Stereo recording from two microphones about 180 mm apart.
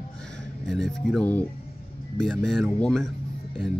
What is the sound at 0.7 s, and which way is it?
Speech, centre (ahead or behind).